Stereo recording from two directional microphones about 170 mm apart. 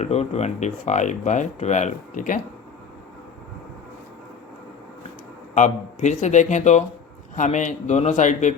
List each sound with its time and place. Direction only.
0.0 s speech: 40° left (ahead or behind)
5.5 s speech: 45° left (ahead or behind)